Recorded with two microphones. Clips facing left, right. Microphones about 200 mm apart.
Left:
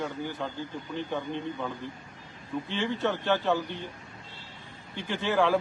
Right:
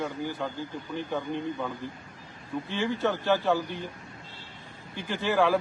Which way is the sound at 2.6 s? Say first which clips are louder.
Right 2 dB; 10° right (ahead or behind).